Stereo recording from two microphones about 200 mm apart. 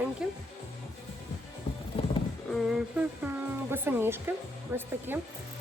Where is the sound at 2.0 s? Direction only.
25° left (ahead or behind).